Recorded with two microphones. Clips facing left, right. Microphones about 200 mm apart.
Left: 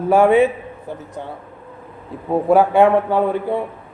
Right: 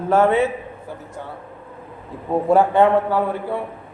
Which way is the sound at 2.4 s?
10° left (ahead or behind).